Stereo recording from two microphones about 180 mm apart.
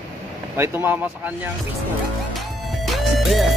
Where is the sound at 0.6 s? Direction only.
10° right (ahead or behind).